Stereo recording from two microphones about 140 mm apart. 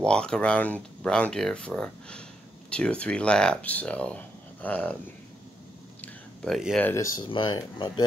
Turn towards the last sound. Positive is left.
turn(degrees=35)  # may be behind; listen again after turning